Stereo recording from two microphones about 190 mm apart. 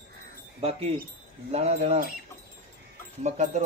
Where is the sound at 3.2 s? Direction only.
35° right (ahead or behind).